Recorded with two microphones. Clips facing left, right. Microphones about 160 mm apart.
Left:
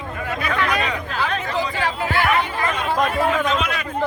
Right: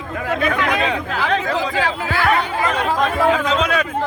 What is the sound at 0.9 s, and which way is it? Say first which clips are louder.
Chatter: right 4 dB; 90° right.